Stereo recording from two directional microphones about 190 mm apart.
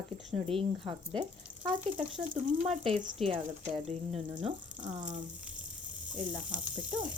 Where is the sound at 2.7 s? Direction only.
35° right (ahead or behind).